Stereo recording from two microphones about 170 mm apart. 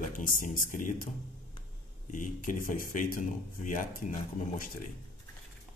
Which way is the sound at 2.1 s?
50° left (ahead or behind).